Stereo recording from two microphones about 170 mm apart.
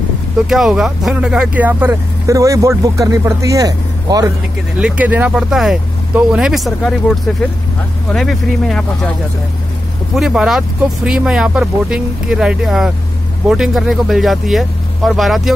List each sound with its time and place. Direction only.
0.5 s speech: centre (ahead or behind); by 4.3 s 20° right (ahead or behind)
4.7 s speech: 10° right (ahead or behind)
10.1 s speech: 5° right (ahead or behind)